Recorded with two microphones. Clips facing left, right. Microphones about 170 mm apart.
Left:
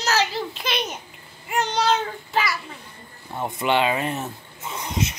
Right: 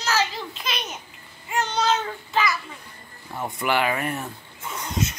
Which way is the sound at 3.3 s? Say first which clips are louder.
Left 2 dB; 20° left (ahead or behind).